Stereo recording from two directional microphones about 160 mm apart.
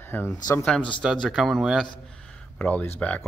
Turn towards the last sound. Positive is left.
turn(degrees=10)  # may be behind; listen again after turning